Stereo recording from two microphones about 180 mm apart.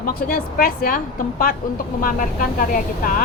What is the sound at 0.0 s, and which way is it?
A woman's voice, 55° left (ahead or behind).